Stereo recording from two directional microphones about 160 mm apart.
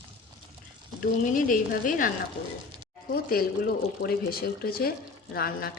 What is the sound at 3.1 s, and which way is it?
Speech, 70° left (ahead or behind).